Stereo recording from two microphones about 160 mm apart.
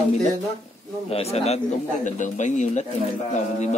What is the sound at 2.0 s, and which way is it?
Speech, 50° left (ahead or behind).